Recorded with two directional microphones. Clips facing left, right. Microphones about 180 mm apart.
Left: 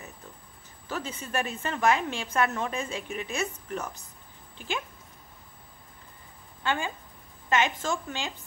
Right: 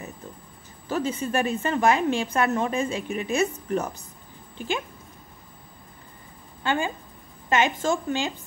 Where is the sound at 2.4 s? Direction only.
35° right (ahead or behind).